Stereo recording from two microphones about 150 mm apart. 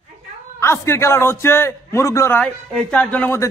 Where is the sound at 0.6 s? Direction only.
15° left (ahead or behind).